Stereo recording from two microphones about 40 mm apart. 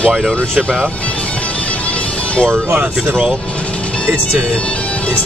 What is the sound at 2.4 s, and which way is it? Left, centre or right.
Speech, right.